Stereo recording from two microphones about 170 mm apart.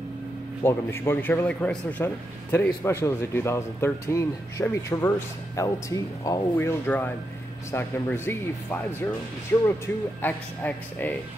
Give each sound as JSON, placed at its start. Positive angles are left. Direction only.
{"t": 0.7, "sound": "speech", "side_deg": 15}
{"t": 9.5, "sound": "speech", "side_deg": 15}